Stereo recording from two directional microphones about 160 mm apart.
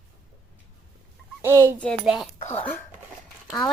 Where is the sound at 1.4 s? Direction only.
15° right (ahead or behind).